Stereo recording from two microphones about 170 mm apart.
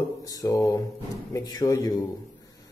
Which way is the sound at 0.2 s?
20° left (ahead or behind).